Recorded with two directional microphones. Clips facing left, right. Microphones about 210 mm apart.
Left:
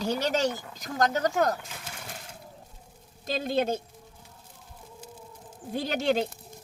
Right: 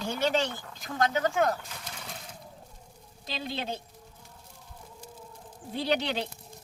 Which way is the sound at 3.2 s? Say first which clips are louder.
Left 8 dB; 45° left (ahead or behind).